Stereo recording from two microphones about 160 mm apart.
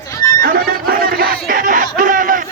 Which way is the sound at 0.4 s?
65° right (ahead or behind).